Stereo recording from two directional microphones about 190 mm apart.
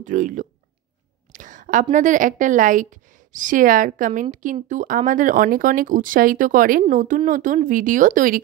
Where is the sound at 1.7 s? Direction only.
40° right (ahead or behind).